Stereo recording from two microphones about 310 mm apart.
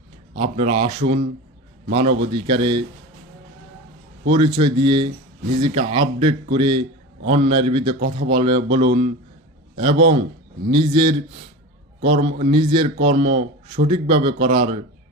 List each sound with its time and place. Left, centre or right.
0.3 s a man's voice: centre
4.3 s a man's voice: centre